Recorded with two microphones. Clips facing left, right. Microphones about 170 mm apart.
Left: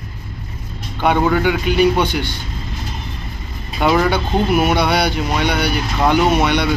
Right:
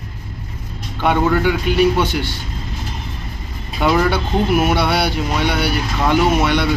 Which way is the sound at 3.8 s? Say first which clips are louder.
Left 1 dB; centre (ahead or behind).